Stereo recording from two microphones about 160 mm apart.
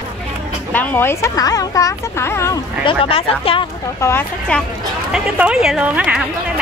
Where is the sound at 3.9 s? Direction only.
15° left (ahead or behind).